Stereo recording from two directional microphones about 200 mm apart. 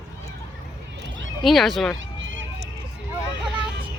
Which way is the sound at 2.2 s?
70° right (ahead or behind).